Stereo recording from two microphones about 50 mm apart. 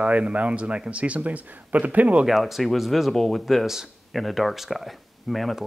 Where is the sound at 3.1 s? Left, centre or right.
Centre.